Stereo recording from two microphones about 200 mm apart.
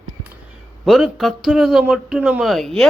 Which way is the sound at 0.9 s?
Centre (ahead or behind).